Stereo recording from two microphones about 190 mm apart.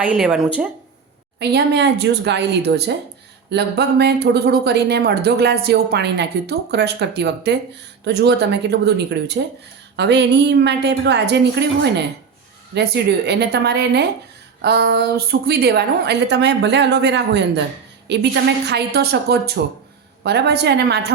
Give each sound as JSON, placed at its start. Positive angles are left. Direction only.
{"t": 0.0, "sound": "speech", "side_deg": -5}
{"t": 1.4, "sound": "speech", "side_deg": -60}
{"t": 12.7, "sound": "speech", "side_deg": -60}